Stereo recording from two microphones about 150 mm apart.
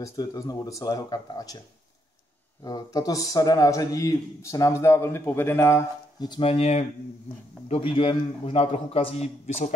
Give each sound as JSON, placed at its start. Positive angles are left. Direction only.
{"t": 0.0, "sound": "a man's voice", "side_deg": 25}
{"t": 2.6, "sound": "a man's voice", "side_deg": 25}
{"t": 6.2, "sound": "a man's voice", "side_deg": 35}